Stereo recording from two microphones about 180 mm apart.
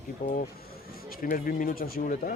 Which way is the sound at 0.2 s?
45° left (ahead or behind).